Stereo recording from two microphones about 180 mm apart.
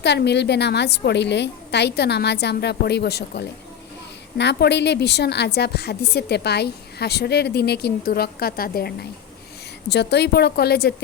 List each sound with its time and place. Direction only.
0.0 s a woman's voice: 70° left (ahead or behind)